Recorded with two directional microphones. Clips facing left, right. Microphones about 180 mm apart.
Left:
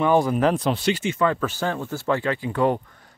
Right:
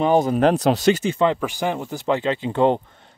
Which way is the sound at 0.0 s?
20° right (ahead or behind).